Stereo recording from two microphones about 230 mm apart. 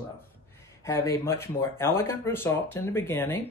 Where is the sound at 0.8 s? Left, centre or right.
Centre.